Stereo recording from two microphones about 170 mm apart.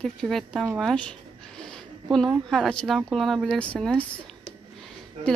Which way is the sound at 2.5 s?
5° left (ahead or behind).